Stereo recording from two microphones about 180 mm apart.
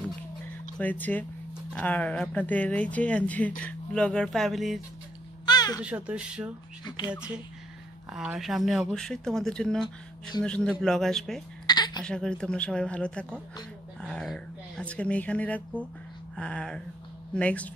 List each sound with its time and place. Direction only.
0.7 s speech: 10° left (ahead or behind)
5.4 s babbling: 20° left (ahead or behind)
5.8 s a child's voice: 5° right (ahead or behind)
11.6 s a sound: 25° left (ahead or behind)
12.0 s speech: 5° left (ahead or behind)
14.0 s a sound: 5° left (ahead or behind)
16.3 s speech: 5° left (ahead or behind)